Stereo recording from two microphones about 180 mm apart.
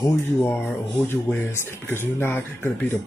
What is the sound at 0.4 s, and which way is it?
Speech, 10° left (ahead or behind).